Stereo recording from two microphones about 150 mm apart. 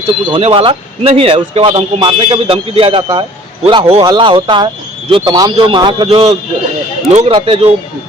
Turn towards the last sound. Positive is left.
turn(degrees=-40)  # may be behind; listen again after turning